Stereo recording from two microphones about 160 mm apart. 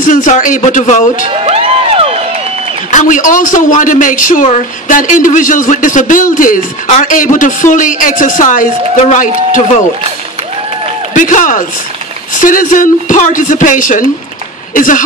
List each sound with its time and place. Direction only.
0.0 s a man's voice: 55° left (ahead or behind)
1.3 s crowd: 35° right (ahead or behind)
2.9 s a man's voice: 50° left (ahead or behind)
11.1 s a man's voice: 55° left (ahead or behind)